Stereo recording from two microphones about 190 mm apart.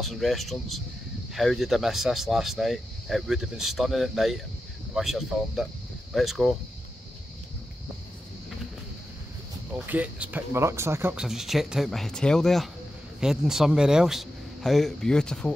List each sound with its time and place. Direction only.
0.0 s speech: centre (ahead or behind)
9.7 s speech: 10° right (ahead or behind)
11.2 s speech: centre (ahead or behind)